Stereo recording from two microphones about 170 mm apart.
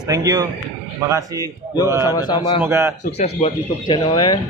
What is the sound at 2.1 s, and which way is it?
Speech, 25° left (ahead or behind).